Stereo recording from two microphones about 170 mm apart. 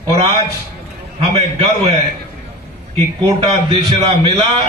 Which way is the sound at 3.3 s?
35° right (ahead or behind).